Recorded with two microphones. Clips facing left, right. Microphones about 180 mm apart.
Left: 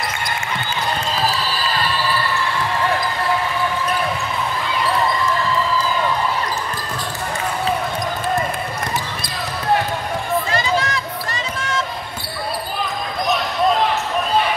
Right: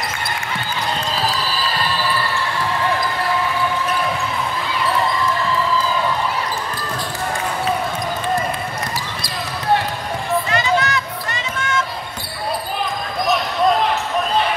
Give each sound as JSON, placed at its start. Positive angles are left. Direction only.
{"t": 10.5, "sound": "run", "side_deg": 30}